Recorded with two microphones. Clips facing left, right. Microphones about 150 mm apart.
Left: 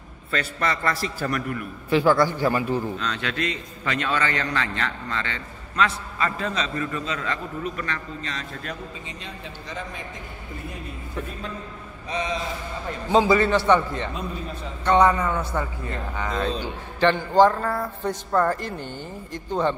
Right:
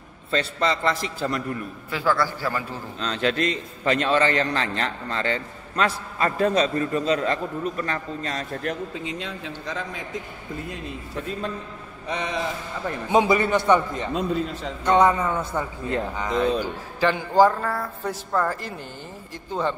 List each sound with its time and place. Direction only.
0.3 s a man's voice: 25° right (ahead or behind)
1.9 s a man's voice: 20° left (ahead or behind)
3.0 s a man's voice: 35° right (ahead or behind)
8.9 s a man's voice: 90° right
12.1 s a man's voice: 60° right (ahead or behind)
13.1 s a man's voice: 20° right (ahead or behind)
14.1 s a man's voice: 85° right
14.9 s a man's voice: 20° right (ahead or behind)
17.6 s speech: 5° left (ahead or behind)